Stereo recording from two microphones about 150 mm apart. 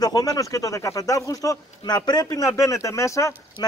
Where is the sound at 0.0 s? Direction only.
25° left (ahead or behind).